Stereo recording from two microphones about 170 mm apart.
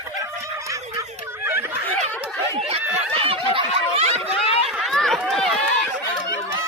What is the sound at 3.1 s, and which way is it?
Snicker, 30° right (ahead or behind).